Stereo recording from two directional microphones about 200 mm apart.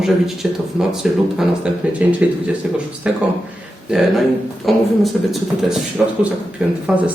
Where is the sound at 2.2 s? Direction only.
5° right (ahead or behind).